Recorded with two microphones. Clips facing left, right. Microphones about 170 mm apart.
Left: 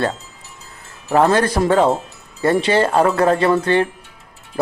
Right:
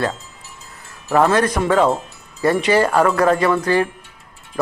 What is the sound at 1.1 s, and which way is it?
Speech, 30° left (ahead or behind).